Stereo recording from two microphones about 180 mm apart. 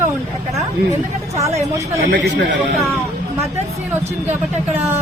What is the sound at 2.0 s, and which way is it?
Speech, 75° right (ahead or behind).